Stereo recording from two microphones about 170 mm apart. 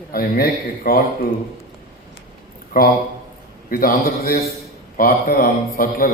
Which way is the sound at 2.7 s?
60° left (ahead or behind).